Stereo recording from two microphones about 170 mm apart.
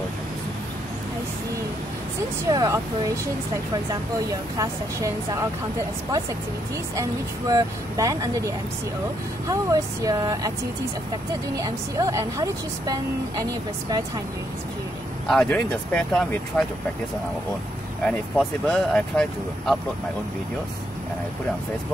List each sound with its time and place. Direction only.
2.5 s a woman's voice: 20° right (ahead or behind)
4.6 s a woman's voice: 20° right (ahead or behind)
7.0 s a woman's voice: 20° right (ahead or behind)
11.5 s a woman's voice: 20° right (ahead or behind)
15.2 s speech: 5° left (ahead or behind)
18.0 s speech: centre (ahead or behind)